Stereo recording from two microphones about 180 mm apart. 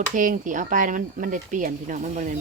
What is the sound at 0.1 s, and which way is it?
Speech, 45° right (ahead or behind).